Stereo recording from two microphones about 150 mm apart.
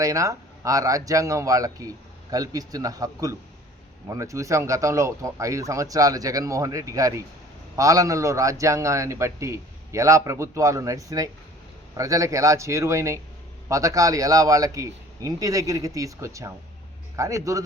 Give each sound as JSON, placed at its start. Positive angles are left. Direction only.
{"t": 0.0, "sound": "a man's voice", "side_deg": -20}